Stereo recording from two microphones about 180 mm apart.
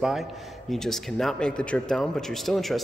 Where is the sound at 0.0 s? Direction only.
Centre (ahead or behind).